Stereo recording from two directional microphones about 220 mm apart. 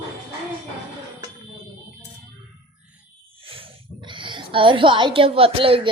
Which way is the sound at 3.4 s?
25° right (ahead or behind).